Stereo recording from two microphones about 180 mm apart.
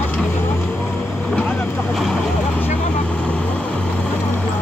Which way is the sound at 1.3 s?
10° left (ahead or behind).